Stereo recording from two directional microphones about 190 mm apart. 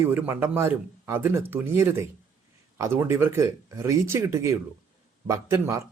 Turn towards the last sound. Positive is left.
turn(degrees=-15)  # may be behind; listen again after turning